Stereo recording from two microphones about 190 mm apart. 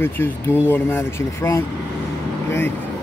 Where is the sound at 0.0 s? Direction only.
10° left (ahead or behind).